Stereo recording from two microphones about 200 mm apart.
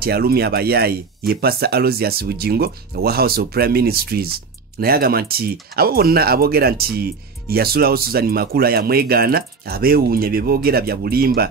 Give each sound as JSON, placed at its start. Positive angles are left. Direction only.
{"t": 0.0, "sound": "speech", "side_deg": -50}